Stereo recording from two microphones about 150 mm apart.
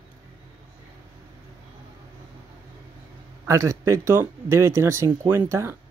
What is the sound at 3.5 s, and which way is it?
Speech, 20° right (ahead or behind).